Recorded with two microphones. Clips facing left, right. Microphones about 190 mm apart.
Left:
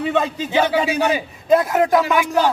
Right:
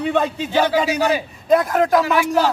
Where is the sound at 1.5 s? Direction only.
5° left (ahead or behind).